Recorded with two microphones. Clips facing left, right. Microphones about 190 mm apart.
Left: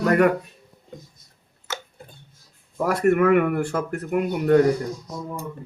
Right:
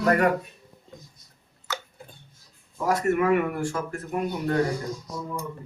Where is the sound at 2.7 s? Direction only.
60° left (ahead or behind).